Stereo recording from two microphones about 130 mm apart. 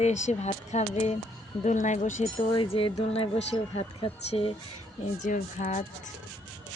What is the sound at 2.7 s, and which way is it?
Speech, 45° left (ahead or behind).